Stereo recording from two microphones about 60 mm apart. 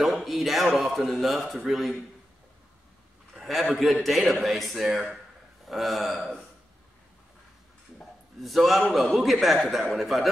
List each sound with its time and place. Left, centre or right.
0.0 s a man's voice: centre
3.3 s a sound: centre
4.0 s a man's voice: centre
8.4 s a man's voice: centre